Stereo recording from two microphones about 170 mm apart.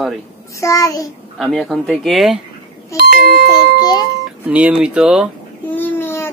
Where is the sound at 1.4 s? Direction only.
Centre (ahead or behind).